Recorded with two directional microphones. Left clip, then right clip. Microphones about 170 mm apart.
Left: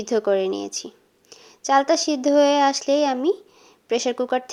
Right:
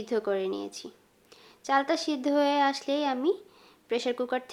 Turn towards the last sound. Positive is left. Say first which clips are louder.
# left 7 dB
turn(degrees=30)  # may be behind; listen again after turning